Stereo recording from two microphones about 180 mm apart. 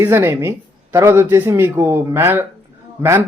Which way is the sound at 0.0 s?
15° right (ahead or behind).